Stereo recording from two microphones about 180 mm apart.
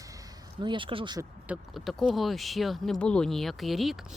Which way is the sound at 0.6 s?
25° right (ahead or behind).